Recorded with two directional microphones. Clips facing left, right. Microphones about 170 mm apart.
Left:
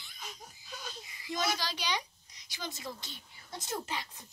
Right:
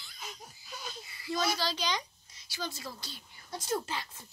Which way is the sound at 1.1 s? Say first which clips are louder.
Right 2 dB; 15° left (ahead or behind).